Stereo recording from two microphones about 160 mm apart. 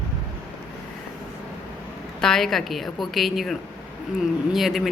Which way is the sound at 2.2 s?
Centre (ahead or behind).